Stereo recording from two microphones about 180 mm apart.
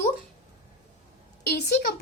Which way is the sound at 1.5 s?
60° left (ahead or behind).